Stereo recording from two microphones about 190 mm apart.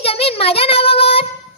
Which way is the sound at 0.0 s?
30° left (ahead or behind).